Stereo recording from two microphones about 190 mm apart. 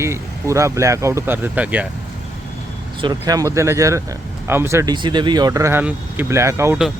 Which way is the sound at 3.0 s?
20° right (ahead or behind).